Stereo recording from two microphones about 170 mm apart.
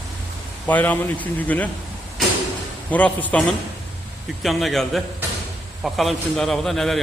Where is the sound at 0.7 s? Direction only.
10° left (ahead or behind).